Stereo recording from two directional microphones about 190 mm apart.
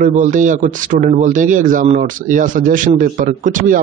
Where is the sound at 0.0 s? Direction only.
40° right (ahead or behind).